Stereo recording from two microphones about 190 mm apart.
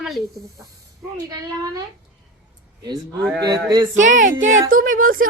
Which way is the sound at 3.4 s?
20° right (ahead or behind).